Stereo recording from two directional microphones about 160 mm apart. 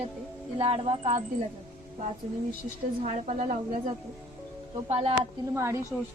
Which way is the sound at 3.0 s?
45° right (ahead or behind).